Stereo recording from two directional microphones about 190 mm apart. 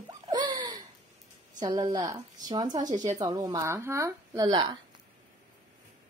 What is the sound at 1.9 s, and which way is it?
A woman's voice, 20° right (ahead or behind).